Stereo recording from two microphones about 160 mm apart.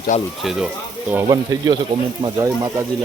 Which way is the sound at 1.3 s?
25° right (ahead or behind).